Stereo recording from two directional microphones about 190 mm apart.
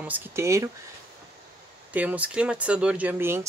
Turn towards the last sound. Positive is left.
turn(degrees=-10)  # may be behind; listen again after turning